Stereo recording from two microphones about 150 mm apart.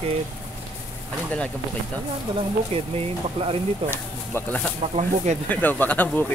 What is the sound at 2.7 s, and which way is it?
Speech, 40° right (ahead or behind).